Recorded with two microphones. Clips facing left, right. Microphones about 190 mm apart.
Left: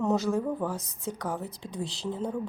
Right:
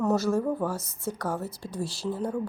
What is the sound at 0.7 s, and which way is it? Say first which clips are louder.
Speech: right 2 dB; 15° left (ahead or behind).